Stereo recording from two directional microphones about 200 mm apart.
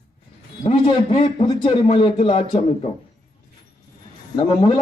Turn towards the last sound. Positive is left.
turn(degrees=25)  # may be behind; listen again after turning